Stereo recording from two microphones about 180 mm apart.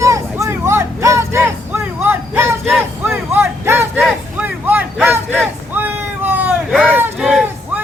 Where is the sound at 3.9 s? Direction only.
5° right (ahead or behind).